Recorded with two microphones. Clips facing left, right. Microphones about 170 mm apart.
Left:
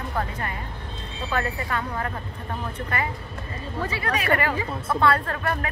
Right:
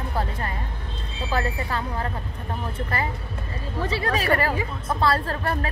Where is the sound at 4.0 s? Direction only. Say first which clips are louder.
Right 1 dB; 35° right (ahead or behind).